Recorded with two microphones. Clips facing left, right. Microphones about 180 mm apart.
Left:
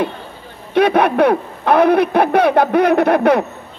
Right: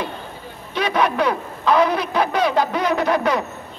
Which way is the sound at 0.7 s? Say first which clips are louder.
Left 7 dB; 55° left (ahead or behind).